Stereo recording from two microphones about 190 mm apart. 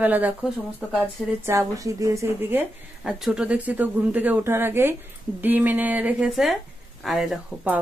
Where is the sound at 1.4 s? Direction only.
15° right (ahead or behind).